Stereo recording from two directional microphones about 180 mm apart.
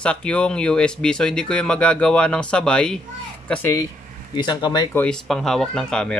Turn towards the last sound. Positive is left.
turn(degrees=5)  # may be behind; listen again after turning